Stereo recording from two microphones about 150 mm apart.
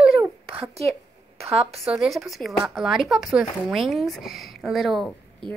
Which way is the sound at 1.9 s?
5° right (ahead or behind).